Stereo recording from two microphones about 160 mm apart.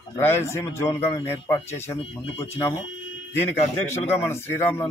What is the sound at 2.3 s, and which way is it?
Speech, 40° left (ahead or behind).